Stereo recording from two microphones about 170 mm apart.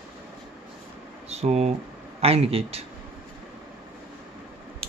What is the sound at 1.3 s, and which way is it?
Speech, 40° right (ahead or behind).